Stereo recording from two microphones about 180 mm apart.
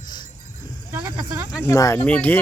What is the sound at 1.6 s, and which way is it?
Speech, 15° left (ahead or behind).